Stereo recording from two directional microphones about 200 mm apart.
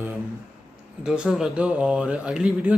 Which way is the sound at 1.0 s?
5° right (ahead or behind).